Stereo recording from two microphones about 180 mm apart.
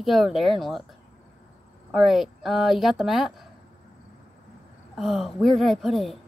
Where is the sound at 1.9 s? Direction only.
Centre (ahead or behind).